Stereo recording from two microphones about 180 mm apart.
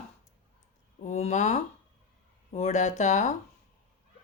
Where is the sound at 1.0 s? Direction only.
40° left (ahead or behind).